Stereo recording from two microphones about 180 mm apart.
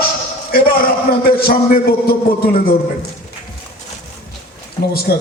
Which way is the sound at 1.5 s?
55° left (ahead or behind).